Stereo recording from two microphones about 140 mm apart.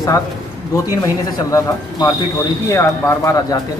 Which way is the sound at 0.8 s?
25° left (ahead or behind).